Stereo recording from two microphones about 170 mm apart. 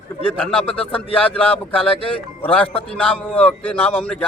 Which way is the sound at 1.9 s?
30° left (ahead or behind).